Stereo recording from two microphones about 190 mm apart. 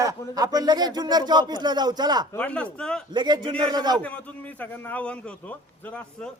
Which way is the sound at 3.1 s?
25° right (ahead or behind).